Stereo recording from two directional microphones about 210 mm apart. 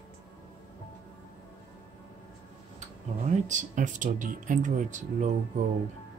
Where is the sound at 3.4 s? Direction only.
35° right (ahead or behind).